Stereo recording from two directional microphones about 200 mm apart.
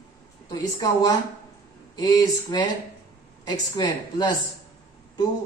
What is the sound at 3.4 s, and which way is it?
A man's voice, 20° left (ahead or behind).